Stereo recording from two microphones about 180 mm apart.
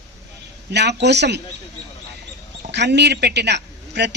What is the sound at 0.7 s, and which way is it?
Speech, 70° right (ahead or behind).